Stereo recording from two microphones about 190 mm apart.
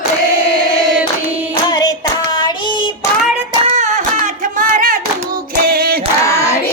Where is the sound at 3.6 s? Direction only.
40° right (ahead or behind).